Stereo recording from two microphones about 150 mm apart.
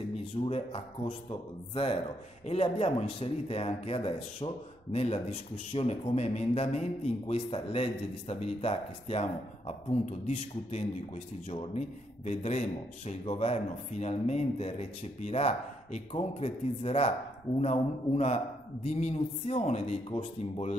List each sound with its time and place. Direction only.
0.5 s a man's voice: 40° left (ahead or behind)